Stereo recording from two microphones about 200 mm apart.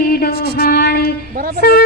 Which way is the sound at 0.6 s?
50° left (ahead or behind).